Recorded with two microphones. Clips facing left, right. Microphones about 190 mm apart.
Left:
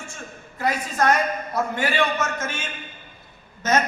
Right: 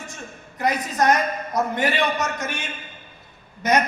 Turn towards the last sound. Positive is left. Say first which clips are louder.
# right 1 dB
turn(degrees=-15)  # may be behind; listen again after turning